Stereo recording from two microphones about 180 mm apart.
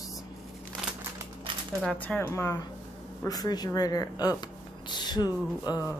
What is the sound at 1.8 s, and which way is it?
Speech, 5° left (ahead or behind).